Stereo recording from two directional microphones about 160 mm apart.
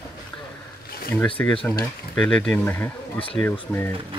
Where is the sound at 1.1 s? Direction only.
10° left (ahead or behind).